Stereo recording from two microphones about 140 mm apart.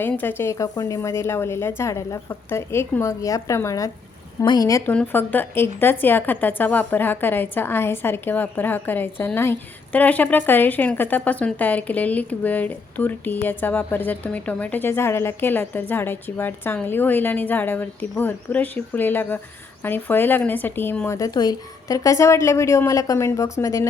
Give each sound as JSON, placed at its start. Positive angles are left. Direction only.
{"t": 0.0, "sound": "a woman's voice", "side_deg": 15}
{"t": 4.9, "sound": "a woman's voice", "side_deg": 10}
{"t": 21.2, "sound": "a woman's voice", "side_deg": 25}